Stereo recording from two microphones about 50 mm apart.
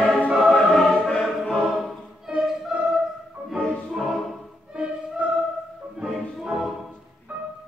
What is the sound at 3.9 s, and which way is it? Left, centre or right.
Music, centre.